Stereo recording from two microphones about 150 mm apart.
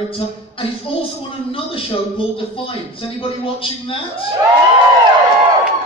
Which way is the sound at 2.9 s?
35° left (ahead or behind).